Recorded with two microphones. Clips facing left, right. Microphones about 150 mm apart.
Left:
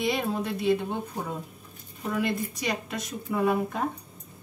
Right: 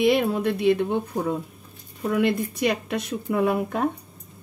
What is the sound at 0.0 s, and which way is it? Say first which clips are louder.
Speech: right 7 dB; 60° right (ahead or behind).